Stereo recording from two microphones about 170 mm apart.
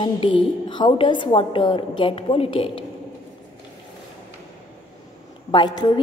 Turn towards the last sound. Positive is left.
turn(degrees=25)  # may be behind; listen again after turning